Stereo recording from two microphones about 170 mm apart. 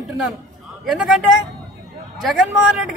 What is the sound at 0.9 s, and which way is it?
A man's voice, centre (ahead or behind).